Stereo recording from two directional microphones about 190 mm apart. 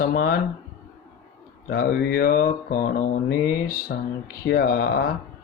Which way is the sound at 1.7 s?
50° left (ahead or behind).